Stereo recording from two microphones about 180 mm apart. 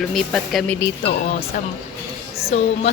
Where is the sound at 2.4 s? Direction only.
35° left (ahead or behind).